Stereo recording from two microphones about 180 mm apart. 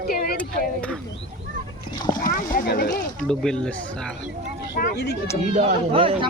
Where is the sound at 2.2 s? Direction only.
55° left (ahead or behind).